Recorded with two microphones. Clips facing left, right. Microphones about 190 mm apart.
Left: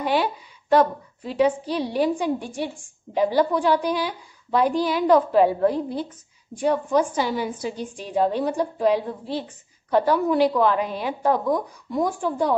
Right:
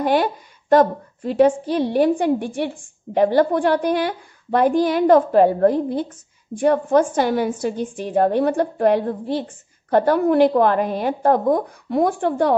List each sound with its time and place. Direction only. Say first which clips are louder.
0.0 s a woman's voice: right 4 dB; 45° right (ahead or behind); by 12.5 s 65° right (ahead or behind)